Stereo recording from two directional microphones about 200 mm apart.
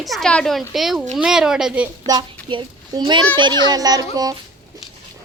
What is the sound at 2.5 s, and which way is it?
A child's voice, 25° right (ahead or behind).